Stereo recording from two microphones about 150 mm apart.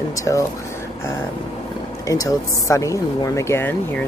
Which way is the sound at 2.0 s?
25° left (ahead or behind).